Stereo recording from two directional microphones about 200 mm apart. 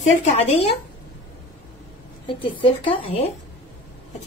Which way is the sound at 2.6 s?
25° left (ahead or behind).